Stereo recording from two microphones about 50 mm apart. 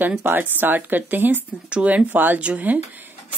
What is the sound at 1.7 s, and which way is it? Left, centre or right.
Speech, right.